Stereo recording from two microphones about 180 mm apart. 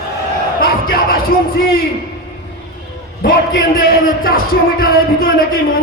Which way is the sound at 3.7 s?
55° left (ahead or behind).